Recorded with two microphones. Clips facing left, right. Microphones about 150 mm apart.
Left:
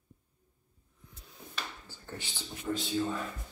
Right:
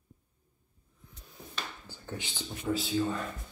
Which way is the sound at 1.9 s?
15° right (ahead or behind).